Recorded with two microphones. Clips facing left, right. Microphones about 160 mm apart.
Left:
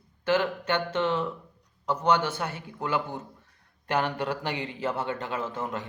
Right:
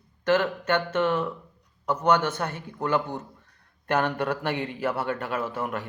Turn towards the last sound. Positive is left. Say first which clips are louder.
# right 3 dB
turn(degrees=20)  # may be behind; listen again after turning